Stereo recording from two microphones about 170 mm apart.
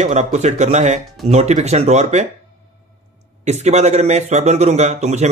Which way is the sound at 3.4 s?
40° right (ahead or behind).